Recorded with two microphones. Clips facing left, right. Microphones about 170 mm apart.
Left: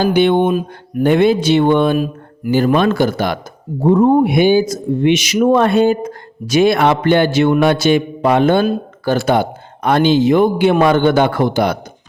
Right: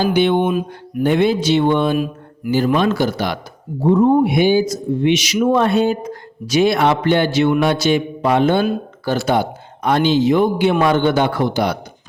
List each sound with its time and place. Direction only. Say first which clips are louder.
0.0 s speech: left 3 dB; 55° left (ahead or behind)